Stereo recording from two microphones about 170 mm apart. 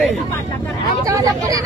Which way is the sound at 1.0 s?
20° right (ahead or behind).